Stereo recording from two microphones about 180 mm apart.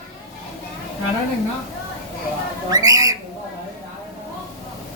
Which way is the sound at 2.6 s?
20° right (ahead or behind).